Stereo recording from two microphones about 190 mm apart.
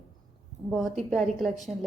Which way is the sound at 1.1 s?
Centre (ahead or behind).